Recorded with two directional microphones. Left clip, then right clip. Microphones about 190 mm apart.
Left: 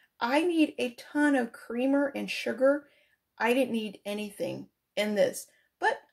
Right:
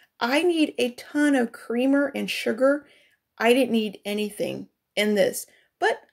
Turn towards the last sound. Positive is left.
turn(degrees=-40)  # may be behind; listen again after turning